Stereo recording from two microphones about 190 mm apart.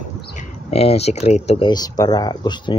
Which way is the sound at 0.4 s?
35° left (ahead or behind).